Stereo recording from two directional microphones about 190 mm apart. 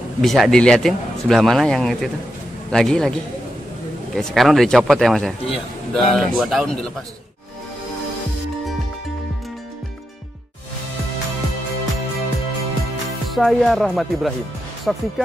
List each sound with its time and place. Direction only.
0.2 s speech: centre (ahead or behind)
5.5 s a man's voice: 30° left (ahead or behind)
6.1 s speech: centre (ahead or behind)
13.3 s speech: centre (ahead or behind)